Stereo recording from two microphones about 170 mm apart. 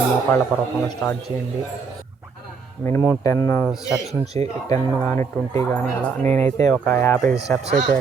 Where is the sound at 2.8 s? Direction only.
15° left (ahead or behind).